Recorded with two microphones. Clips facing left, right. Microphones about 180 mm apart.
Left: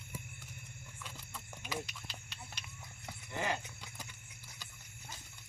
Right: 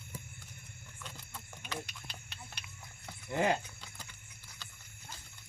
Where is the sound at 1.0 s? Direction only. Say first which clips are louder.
Right 1 dB; 5° left (ahead or behind).